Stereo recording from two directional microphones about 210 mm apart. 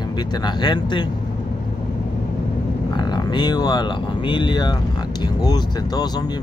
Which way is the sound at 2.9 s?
20° left (ahead or behind).